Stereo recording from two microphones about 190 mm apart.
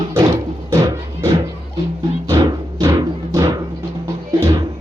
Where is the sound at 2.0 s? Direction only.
15° right (ahead or behind).